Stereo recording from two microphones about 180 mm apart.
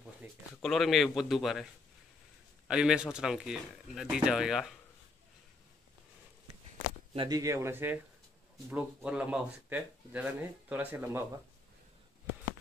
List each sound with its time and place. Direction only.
0.2 s a sound: 10° right (ahead or behind)
0.6 s speech: centre (ahead or behind)
2.7 s speech: 5° right (ahead or behind)
7.2 s speech: 20° right (ahead or behind)